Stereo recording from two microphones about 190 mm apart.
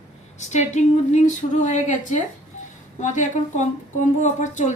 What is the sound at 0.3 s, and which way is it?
Speech, 40° left (ahead or behind).